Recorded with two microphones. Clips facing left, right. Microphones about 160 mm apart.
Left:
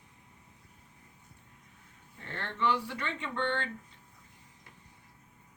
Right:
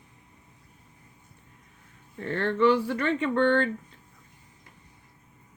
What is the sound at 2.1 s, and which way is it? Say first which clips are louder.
Speech: right 13 dB; 55° right (ahead or behind).